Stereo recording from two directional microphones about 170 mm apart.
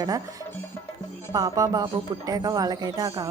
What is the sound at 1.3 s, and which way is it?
A woman's voice, 20° right (ahead or behind).